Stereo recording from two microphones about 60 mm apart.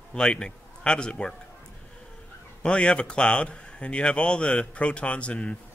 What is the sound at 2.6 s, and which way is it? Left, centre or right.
Speech, centre.